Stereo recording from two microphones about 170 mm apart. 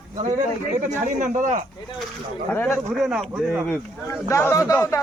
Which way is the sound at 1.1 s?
50° right (ahead or behind).